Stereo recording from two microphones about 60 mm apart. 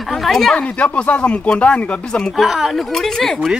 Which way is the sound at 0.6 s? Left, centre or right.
Left.